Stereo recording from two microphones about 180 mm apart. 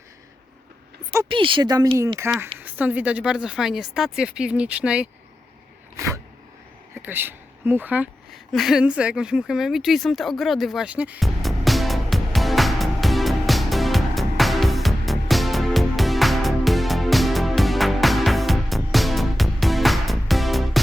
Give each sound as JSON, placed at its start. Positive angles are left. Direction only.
{"t": 1.3, "sound": "speech", "side_deg": -30}
{"t": 2.1, "sound": "speech", "side_deg": -15}
{"t": 6.9, "sound": "a sound", "side_deg": -10}